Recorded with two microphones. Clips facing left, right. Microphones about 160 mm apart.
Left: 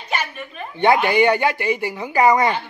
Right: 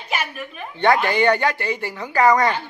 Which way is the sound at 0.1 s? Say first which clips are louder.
Even; 5° right (ahead or behind).